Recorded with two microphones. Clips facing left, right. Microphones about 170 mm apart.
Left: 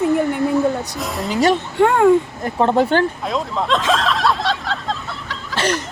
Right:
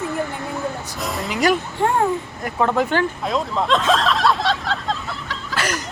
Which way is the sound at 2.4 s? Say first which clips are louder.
Left 4 dB; 30° left (ahead or behind).